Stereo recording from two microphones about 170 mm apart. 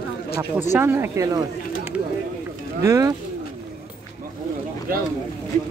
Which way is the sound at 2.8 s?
20° right (ahead or behind).